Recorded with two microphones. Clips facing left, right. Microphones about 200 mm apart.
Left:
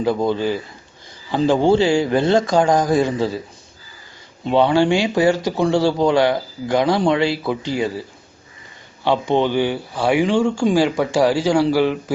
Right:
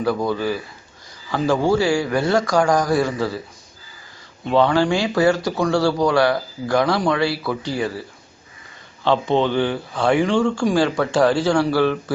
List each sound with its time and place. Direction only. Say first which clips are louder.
0.0 s speech: left 2 dB; 20° left (ahead or behind)
4.4 s speech: left 2 dB; 20° left (ahead or behind)
9.0 s speech: left 1 dB; 15° left (ahead or behind)